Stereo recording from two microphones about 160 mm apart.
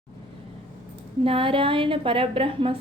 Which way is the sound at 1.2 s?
35° right (ahead or behind).